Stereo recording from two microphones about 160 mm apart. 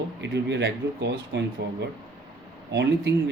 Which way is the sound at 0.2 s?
90° right.